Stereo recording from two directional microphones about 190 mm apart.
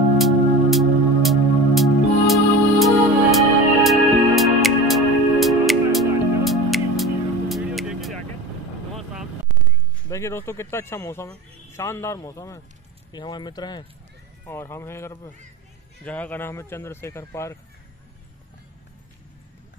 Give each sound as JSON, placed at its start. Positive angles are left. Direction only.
{"t": 0.2, "sound": "music", "side_deg": 0}
{"t": 10.0, "sound": "speech", "side_deg": 15}